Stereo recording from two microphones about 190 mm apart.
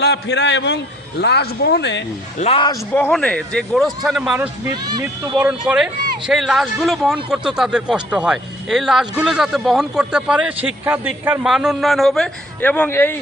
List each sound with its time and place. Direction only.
0.0 s speech: 60° left (ahead or behind)
2.4 s a man's voice: 30° left (ahead or behind)
2.9 s speech: 5° left (ahead or behind); by 4.4 s 10° right (ahead or behind)
4.7 s speech: 20° right (ahead or behind)
5.4 s speech: 5° right (ahead or behind); by 13.1 s 10° left (ahead or behind)